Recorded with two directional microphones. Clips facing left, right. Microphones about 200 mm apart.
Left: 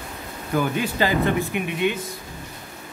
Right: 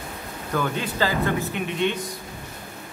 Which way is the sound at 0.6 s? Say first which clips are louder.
Left 3 dB; 15° left (ahead or behind).